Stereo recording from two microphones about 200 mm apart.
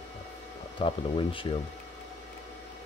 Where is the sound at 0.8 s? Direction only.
25° left (ahead or behind).